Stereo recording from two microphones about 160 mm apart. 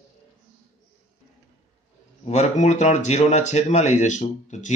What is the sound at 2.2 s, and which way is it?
Speech, 45° left (ahead or behind).